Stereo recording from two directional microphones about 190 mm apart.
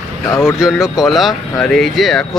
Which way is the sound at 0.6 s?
Centre (ahead or behind).